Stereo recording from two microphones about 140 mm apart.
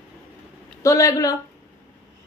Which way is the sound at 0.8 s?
25° left (ahead or behind).